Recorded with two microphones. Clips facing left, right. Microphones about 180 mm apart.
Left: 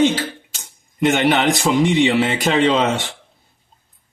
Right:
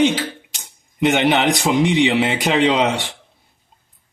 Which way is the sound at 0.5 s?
15° right (ahead or behind).